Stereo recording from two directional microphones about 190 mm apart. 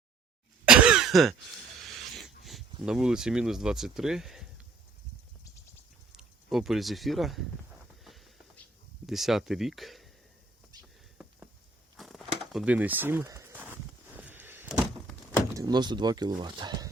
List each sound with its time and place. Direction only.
0.7 s throat clearing: 5° right (ahead or behind)
2.8 s speech: 5° right (ahead or behind)
6.1 s speech: 5° right (ahead or behind)
8.0 s a sound: centre (ahead or behind)
9.0 s speech: centre (ahead or behind)
10.7 s a sound: 20° right (ahead or behind)
11.9 s a sound: centre (ahead or behind)
14.2 s vehicle: 10° right (ahead or behind)
15.5 s speech: 20° right (ahead or behind)